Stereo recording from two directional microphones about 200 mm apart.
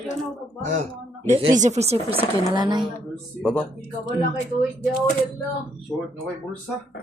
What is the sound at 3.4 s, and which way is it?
Speech, 5° left (ahead or behind).